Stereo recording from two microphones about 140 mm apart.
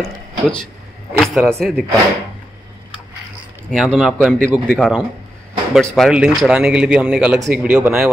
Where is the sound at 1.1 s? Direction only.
Centre (ahead or behind).